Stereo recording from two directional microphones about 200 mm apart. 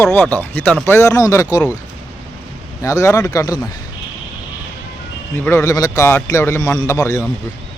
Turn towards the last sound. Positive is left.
turn(degrees=15)  # may be behind; listen again after turning